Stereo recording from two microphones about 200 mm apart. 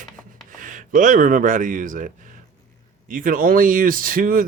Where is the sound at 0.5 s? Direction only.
40° right (ahead or behind).